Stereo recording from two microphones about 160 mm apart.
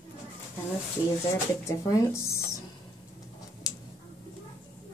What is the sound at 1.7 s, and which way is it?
Speech, 20° left (ahead or behind).